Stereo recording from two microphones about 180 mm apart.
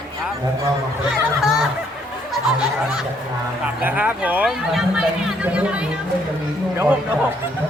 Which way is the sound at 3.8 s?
10° right (ahead or behind).